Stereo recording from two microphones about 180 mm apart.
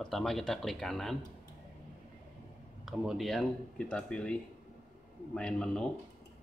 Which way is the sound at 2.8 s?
Centre (ahead or behind).